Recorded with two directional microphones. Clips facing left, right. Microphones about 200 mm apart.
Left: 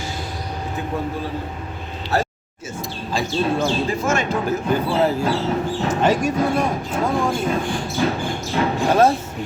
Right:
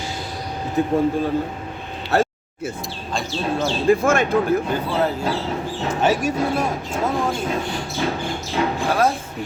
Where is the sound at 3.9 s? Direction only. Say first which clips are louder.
Right 4 dB; 55° right (ahead or behind).